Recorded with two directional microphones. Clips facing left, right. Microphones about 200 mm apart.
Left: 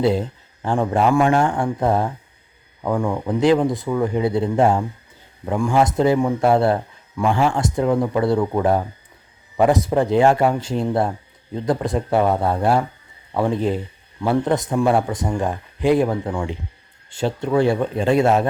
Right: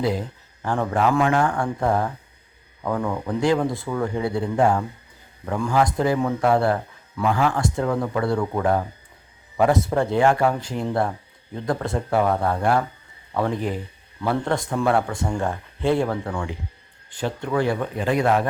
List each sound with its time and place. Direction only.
0.0 s speech: 25° left (ahead or behind)
5.5 s speech: 15° left (ahead or behind)
14.2 s speech: 15° left (ahead or behind)